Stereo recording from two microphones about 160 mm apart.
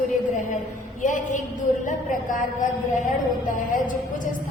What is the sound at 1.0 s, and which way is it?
A woman's voice, 55° left (ahead or behind).